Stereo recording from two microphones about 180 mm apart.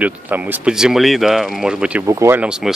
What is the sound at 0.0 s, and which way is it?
Speech, 10° right (ahead or behind).